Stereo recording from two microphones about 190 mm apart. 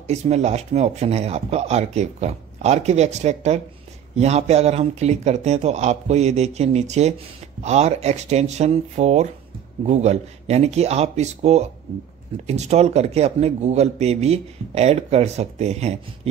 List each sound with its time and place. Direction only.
0.0 s speech: 35° right (ahead or behind)